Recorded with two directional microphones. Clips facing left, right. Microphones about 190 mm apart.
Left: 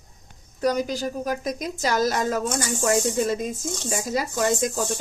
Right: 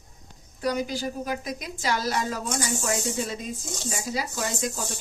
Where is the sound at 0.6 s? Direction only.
45° left (ahead or behind).